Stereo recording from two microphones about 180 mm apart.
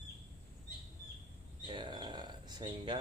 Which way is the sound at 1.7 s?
25° right (ahead or behind).